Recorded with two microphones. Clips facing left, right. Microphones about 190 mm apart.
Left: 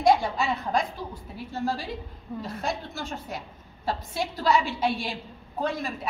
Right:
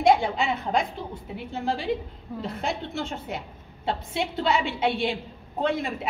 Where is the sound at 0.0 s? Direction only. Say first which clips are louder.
Right 1 dB; 25° right (ahead or behind).